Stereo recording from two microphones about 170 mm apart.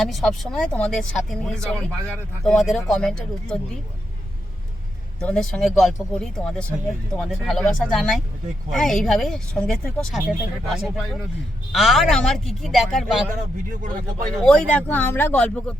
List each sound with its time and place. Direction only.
0.0 s speech: centre (ahead or behind)
5.2 s speech: 5° left (ahead or behind)
13.3 s speech: 50° right (ahead or behind)
14.4 s speech: 5° left (ahead or behind)